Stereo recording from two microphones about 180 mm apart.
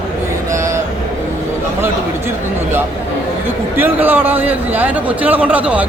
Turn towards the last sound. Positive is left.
turn(degrees=-10)  # may be behind; listen again after turning